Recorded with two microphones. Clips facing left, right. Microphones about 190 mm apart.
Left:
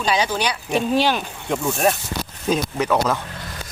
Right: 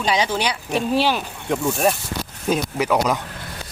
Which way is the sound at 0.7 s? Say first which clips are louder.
Left 1 dB; 5° right (ahead or behind).